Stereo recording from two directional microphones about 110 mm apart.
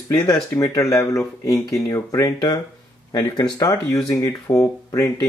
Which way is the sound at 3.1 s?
40° left (ahead or behind).